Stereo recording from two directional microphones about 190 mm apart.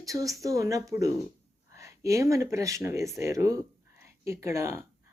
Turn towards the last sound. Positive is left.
turn(degrees=-15)  # may be behind; listen again after turning